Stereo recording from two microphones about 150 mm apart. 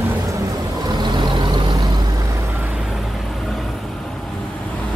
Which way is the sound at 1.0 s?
30° right (ahead or behind).